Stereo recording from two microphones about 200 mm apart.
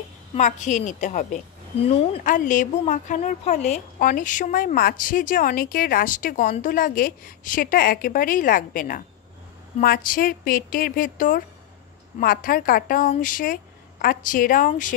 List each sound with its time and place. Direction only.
0.3 s a woman's voice: 35° left (ahead or behind)